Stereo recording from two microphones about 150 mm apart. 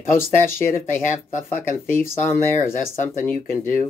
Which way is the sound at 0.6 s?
55° left (ahead or behind).